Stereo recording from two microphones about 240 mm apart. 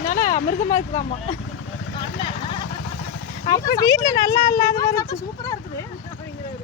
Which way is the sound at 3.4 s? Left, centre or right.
Centre.